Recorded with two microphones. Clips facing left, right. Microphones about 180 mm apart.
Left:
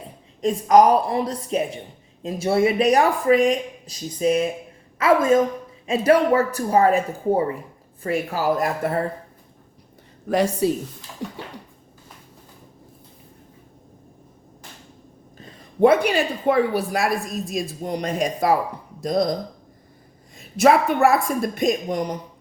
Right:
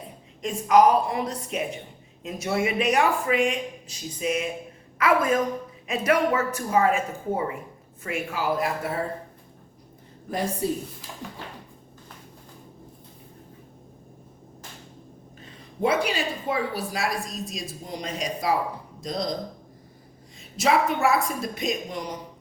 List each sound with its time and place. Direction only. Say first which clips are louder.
0.4 s a woman's voice: left 3 dB; 40° left (ahead or behind)
10.2 s a woman's voice: left 7 dB; 80° left
15.8 s a woman's voice: left 8 dB; 55° left (ahead or behind)
20.6 s a woman's voice: left 6 dB; 55° left (ahead or behind)